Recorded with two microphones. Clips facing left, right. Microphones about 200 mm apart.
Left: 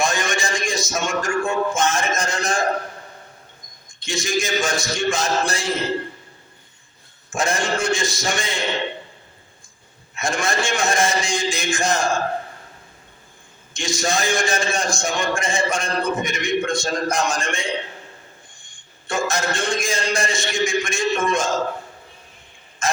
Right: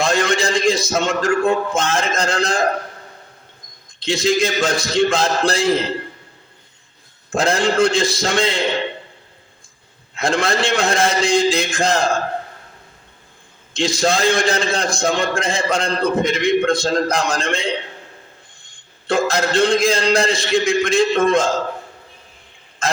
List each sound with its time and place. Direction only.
0.0 s a man's voice: 60° right (ahead or behind)
4.0 s a man's voice: 60° right (ahead or behind)
7.3 s a man's voice: 60° right (ahead or behind)
10.2 s a man's voice: 60° right (ahead or behind)
13.7 s a man's voice: 60° right (ahead or behind)
19.0 s a man's voice: 60° right (ahead or behind)